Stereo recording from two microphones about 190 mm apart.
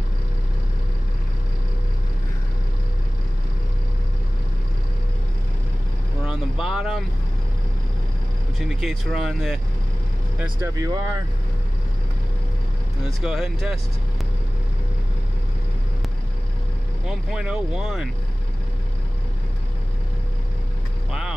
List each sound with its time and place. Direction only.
6.2 s vehicle: 5° right (ahead or behind)
8.5 s speech: centre (ahead or behind)
10.4 s speech: 15° right (ahead or behind)
13.2 s speech: 5° right (ahead or behind)
17.0 s speech: 5° right (ahead or behind)
21.1 s speech: 5° right (ahead or behind)